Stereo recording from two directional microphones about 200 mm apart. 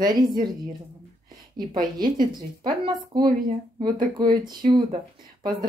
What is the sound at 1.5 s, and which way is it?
Speech, 20° right (ahead or behind).